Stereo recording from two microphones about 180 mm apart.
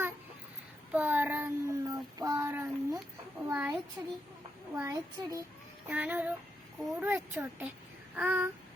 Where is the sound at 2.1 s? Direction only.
20° right (ahead or behind).